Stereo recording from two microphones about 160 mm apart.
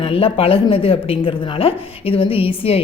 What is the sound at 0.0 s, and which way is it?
A woman's voice, 35° left (ahead or behind).